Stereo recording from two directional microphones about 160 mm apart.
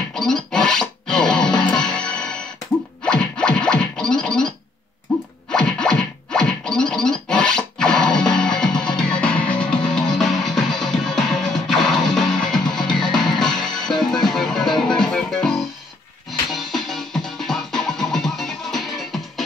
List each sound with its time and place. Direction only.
0.1 s music: 5° left (ahead or behind)
3.1 s scratching: 5° left (ahead or behind)
5.5 s scratching: 5° left (ahead or behind)
14.2 s music: centre (ahead or behind)